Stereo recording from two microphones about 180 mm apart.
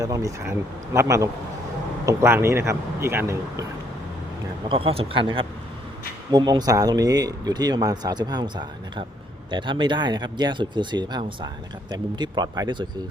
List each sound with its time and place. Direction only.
0.0 s speech: 20° right (ahead or behind)
4.7 s speech: 30° right (ahead or behind)